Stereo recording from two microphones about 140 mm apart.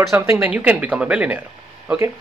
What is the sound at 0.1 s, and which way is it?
Speech, 20° right (ahead or behind).